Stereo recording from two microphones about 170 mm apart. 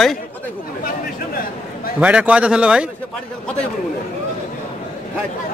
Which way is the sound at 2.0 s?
10° right (ahead or behind).